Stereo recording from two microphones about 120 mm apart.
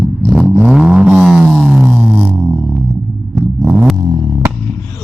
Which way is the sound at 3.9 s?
30° right (ahead or behind).